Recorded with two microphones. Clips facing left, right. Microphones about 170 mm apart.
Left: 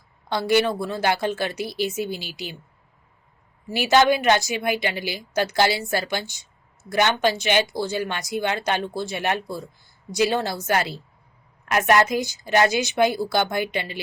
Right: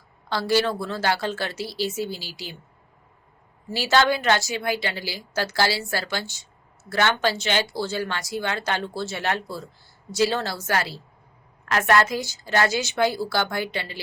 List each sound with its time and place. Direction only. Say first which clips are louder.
0.3 s a woman's voice: left 2 dB; 20° left (ahead or behind)
3.7 s a woman's voice: left 3 dB; 15° left (ahead or behind)